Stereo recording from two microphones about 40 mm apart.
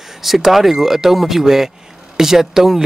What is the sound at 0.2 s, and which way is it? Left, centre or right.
Speech, centre.